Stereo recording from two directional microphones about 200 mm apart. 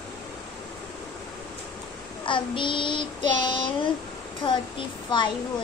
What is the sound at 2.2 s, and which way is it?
Child singing, 25° left (ahead or behind).